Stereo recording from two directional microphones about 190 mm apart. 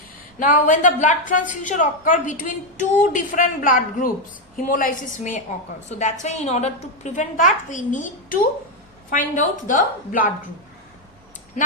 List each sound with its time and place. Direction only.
0.3 s a woman's voice: 45° left (ahead or behind)